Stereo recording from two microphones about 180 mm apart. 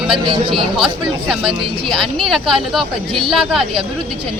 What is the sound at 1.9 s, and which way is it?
Speech, centre (ahead or behind).